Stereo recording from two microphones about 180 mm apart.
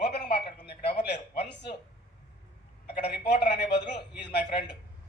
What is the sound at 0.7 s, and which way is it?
Speech, 65° left (ahead or behind).